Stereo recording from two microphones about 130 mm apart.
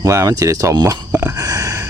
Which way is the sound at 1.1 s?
20° right (ahead or behind).